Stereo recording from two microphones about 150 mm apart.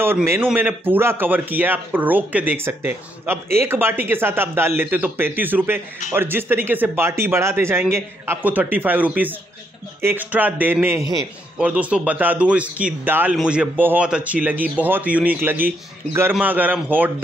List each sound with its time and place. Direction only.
0.0 s speech: 15° right (ahead or behind)